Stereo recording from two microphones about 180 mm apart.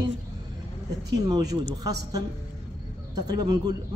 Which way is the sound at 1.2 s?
20° right (ahead or behind).